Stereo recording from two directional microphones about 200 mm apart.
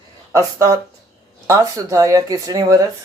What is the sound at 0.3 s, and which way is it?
Speech, 15° right (ahead or behind).